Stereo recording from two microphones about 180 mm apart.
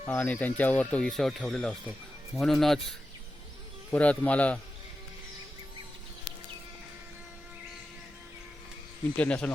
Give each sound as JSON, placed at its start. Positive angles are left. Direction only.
{"t": 0.1, "sound": "speech", "side_deg": 10}
{"t": 3.9, "sound": "speech", "side_deg": 5}
{"t": 9.1, "sound": "speech", "side_deg": 5}